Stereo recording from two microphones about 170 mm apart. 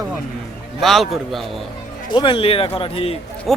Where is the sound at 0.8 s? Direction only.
Centre (ahead or behind).